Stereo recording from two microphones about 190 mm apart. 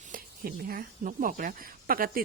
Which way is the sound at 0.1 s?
50° right (ahead or behind).